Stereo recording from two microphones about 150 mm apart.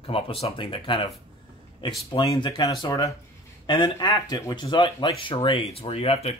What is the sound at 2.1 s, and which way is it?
Speech, 30° left (ahead or behind).